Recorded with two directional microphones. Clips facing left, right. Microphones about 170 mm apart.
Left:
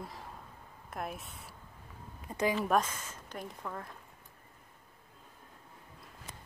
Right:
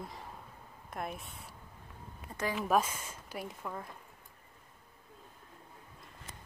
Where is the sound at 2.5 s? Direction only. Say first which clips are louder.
Even; 5° right (ahead or behind).